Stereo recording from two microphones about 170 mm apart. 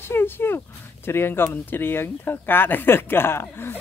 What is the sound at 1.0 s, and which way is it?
Speech, 15° left (ahead or behind).